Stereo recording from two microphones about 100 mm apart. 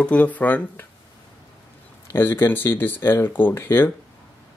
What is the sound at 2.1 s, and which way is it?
Speech, 20° left (ahead or behind).